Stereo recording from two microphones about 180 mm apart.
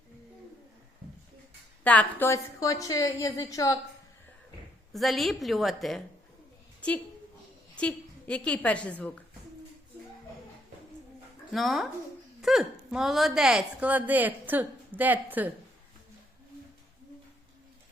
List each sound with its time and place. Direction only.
1.8 s a woman's voice: 10° left (ahead or behind)
4.9 s a woman's voice: centre (ahead or behind)
7.8 s a woman's voice: 5° left (ahead or behind)
11.5 s a woman's voice: centre (ahead or behind)